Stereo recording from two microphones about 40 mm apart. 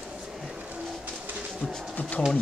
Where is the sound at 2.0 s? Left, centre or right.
Left.